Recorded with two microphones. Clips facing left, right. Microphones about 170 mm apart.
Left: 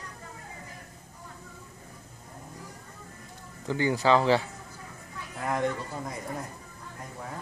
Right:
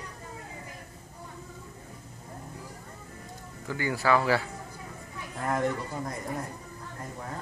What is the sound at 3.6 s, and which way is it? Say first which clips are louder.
Speech: left 3 dB; 25° left (ahead or behind).